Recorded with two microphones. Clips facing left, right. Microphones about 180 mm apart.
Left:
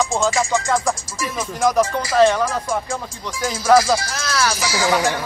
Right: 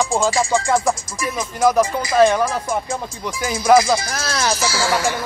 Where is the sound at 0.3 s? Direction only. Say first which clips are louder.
Right 1 dB; 30° right (ahead or behind).